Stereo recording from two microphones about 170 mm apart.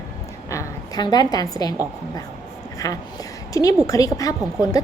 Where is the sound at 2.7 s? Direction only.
20° left (ahead or behind).